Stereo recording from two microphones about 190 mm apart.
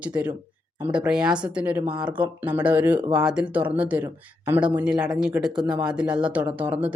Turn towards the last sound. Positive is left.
turn(degrees=-10)  # may be behind; listen again after turning